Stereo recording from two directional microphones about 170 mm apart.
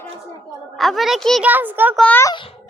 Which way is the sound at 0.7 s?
Centre (ahead or behind).